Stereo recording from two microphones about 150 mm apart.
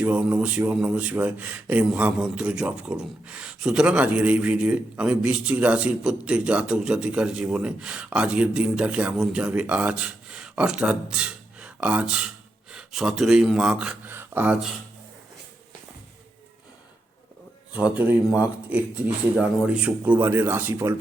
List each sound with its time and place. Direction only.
0.0 s speech: 10° right (ahead or behind)
17.7 s speech: 10° right (ahead or behind)